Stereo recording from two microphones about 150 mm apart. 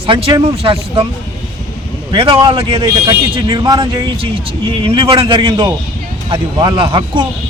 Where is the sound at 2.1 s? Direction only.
35° right (ahead or behind).